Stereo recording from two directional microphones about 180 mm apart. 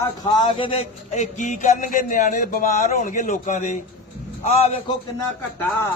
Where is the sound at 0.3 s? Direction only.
25° left (ahead or behind); by 3.8 s 45° left (ahead or behind).